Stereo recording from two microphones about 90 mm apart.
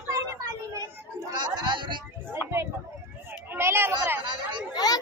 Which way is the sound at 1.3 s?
55° right (ahead or behind).